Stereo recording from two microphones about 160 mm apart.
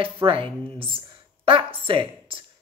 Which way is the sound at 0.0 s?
35° right (ahead or behind).